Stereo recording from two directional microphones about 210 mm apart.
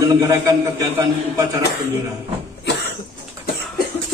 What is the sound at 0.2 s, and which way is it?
Speech, 15° right (ahead or behind).